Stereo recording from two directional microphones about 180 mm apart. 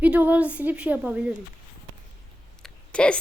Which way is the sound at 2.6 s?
5° left (ahead or behind).